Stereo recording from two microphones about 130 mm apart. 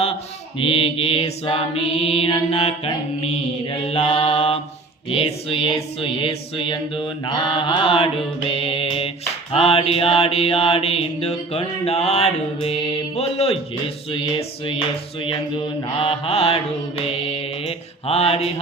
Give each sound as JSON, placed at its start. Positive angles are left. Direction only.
{"t": 0.6, "sound": "mantra", "side_deg": 45}
{"t": 14.1, "sound": "music", "side_deg": 40}
{"t": 15.2, "sound": "mantra", "side_deg": 40}